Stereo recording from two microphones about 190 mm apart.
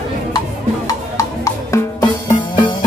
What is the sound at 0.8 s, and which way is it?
Drum, 15° left (ahead or behind).